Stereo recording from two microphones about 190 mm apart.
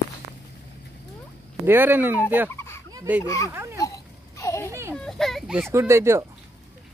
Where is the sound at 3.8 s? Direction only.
15° left (ahead or behind).